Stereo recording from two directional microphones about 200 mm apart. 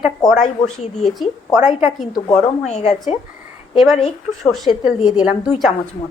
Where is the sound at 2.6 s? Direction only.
35° left (ahead or behind).